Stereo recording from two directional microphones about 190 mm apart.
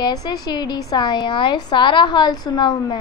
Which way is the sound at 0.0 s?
20° left (ahead or behind).